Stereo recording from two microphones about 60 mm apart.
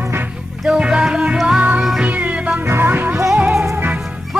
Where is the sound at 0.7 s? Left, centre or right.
Centre.